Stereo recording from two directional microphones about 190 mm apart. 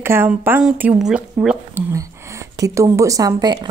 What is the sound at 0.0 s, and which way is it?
Speech, 10° right (ahead or behind).